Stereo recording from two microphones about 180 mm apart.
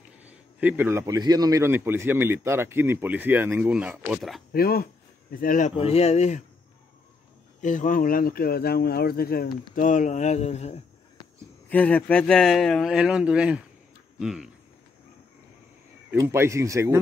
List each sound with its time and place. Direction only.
0.3 s a man's voice: 10° right (ahead or behind)
4.5 s speech: 55° left (ahead or behind)
5.8 s speech: 35° left (ahead or behind)
7.6 s speech: 45° left (ahead or behind)
9.8 s speech: 45° left (ahead or behind)
11.7 s speech: 5° left (ahead or behind)
14.1 s a sound: 5° right (ahead or behind)
16.1 s a man's voice: 15° right (ahead or behind)